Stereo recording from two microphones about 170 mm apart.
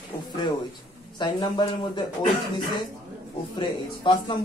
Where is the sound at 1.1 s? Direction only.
25° left (ahead or behind).